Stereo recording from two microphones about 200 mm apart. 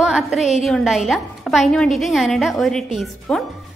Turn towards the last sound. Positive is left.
turn(degrees=0)  # may be behind; listen again after turning